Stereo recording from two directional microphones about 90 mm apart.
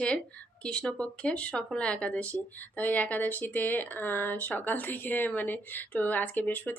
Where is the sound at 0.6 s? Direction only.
10° left (ahead or behind).